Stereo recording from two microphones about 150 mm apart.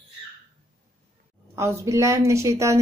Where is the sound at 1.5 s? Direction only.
20° right (ahead or behind).